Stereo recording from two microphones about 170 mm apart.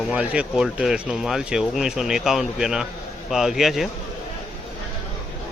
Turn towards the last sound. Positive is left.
turn(degrees=0)  # may be behind; listen again after turning